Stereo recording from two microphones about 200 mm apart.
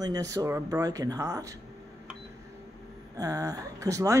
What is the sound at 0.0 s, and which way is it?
Speech, 20° right (ahead or behind).